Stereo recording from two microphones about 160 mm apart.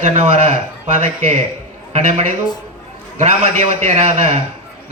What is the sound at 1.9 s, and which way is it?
A man's voice, 45° right (ahead or behind).